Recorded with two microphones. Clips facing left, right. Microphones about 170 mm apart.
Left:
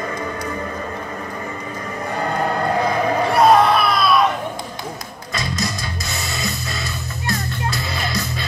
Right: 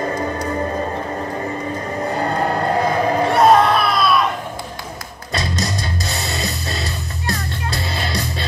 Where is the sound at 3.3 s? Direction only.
Centre (ahead or behind).